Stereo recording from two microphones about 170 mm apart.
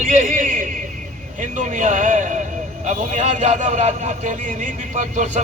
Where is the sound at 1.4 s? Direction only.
50° right (ahead or behind).